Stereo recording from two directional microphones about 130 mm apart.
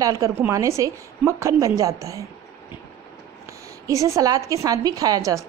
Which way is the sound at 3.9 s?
25° right (ahead or behind).